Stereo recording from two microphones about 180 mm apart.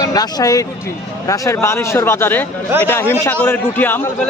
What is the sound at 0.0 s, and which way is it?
A man's voice, 20° left (ahead or behind).